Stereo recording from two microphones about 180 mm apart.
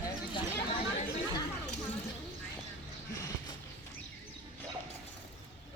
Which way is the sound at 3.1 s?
20° left (ahead or behind).